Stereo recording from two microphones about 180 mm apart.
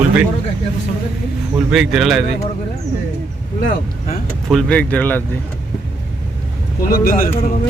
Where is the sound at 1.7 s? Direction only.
Centre (ahead or behind).